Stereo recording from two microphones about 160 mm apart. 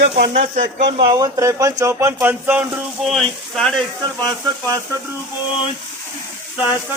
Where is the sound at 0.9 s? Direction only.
30° right (ahead or behind); by 3.8 s centre (ahead or behind).